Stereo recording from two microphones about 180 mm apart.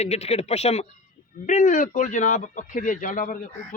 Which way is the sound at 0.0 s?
35° left (ahead or behind).